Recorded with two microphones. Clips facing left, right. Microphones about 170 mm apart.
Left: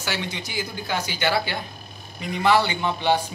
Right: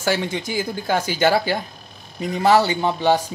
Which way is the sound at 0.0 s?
45° right (ahead or behind).